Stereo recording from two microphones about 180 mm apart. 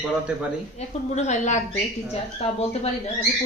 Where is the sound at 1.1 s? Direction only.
40° left (ahead or behind).